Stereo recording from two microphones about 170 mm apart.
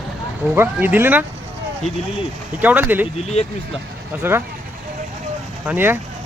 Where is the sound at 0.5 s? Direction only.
10° right (ahead or behind).